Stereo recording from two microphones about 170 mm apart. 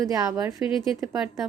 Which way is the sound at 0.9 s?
5° right (ahead or behind).